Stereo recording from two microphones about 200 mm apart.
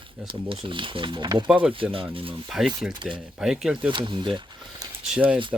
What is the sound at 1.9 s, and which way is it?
Speech, 25° right (ahead or behind).